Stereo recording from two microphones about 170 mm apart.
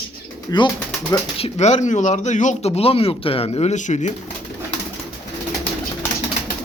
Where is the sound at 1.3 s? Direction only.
40° left (ahead or behind).